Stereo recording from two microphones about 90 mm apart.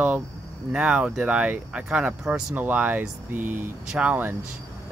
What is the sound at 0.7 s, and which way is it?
Speech, 10° right (ahead or behind).